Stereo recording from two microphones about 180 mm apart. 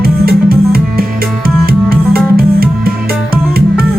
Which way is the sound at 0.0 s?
60° right (ahead or behind).